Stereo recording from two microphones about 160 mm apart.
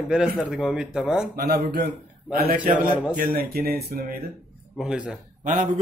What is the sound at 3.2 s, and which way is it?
A man's voice, 65° right (ahead or behind).